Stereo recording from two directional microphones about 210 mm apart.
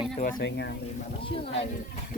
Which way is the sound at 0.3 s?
55° left (ahead or behind).